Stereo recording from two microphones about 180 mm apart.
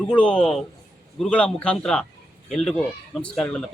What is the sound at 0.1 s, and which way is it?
A man's voice, 5° left (ahead or behind).